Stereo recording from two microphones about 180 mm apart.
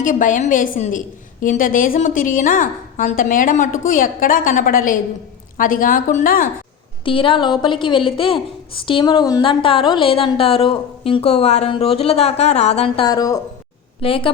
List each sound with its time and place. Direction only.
0.0 s a woman's voice: 45° left (ahead or behind)
7.0 s a woman's voice: 30° left (ahead or behind)
13.1 s a woman's voice: 20° left (ahead or behind)
14.0 s a woman's voice: 30° left (ahead or behind)